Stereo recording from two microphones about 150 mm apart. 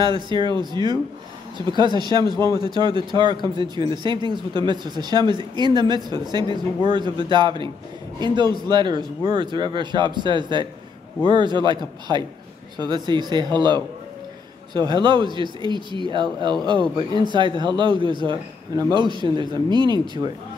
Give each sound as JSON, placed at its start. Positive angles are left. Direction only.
{"t": 0.0, "sound": "speech", "side_deg": -30}